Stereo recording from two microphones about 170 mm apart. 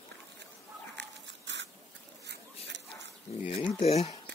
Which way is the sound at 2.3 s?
90° right.